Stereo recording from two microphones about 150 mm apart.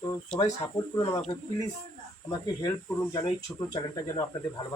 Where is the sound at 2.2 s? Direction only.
25° left (ahead or behind).